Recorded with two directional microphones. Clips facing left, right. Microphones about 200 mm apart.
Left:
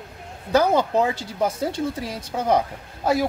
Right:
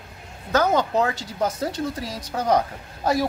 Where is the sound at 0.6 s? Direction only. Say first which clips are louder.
Left 2 dB; 10° left (ahead or behind).